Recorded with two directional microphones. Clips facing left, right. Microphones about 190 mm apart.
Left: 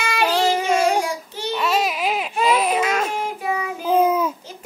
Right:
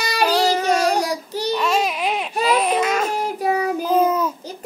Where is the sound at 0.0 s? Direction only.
40° right (ahead or behind).